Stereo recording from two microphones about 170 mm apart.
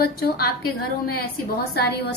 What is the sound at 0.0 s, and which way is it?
A woman's voice, 70° left (ahead or behind).